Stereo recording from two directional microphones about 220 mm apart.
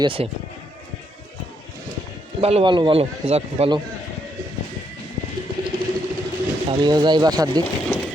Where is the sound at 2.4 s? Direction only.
25° right (ahead or behind).